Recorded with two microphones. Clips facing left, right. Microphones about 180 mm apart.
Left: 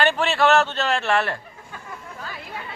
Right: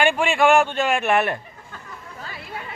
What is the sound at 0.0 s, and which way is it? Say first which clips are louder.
A man's voice: right 2 dB; 10° right (ahead or behind).